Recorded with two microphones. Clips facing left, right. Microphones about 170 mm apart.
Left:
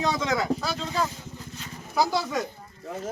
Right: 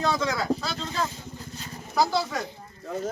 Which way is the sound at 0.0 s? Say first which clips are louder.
Even; 20° left (ahead or behind).